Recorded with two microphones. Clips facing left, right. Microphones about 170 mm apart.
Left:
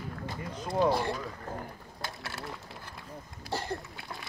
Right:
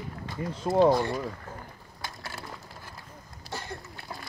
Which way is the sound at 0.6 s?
25° right (ahead or behind).